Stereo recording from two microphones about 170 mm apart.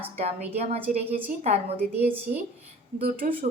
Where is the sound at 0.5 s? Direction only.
40° right (ahead or behind).